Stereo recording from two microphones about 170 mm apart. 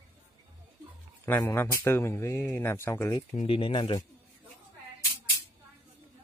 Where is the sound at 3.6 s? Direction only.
30° left (ahead or behind).